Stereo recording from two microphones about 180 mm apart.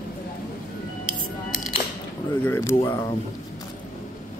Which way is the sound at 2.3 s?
10° left (ahead or behind).